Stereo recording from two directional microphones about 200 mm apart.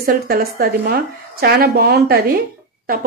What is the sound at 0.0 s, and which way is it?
A woman's voice, 50° right (ahead or behind).